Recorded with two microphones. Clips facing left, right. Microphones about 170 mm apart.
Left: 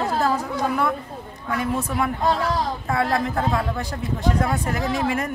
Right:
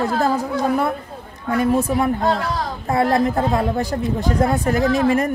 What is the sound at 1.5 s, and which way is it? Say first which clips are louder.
A woman's voice: right 7 dB; 40° right (ahead or behind).